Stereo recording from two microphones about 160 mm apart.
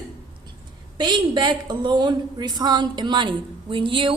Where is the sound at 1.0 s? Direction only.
25° right (ahead or behind).